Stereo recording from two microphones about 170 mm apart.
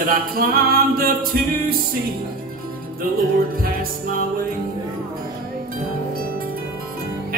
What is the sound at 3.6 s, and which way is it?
Music, 60° right (ahead or behind).